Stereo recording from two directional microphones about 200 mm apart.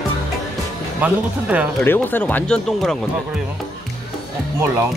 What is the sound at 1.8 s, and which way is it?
Speech, 10° left (ahead or behind).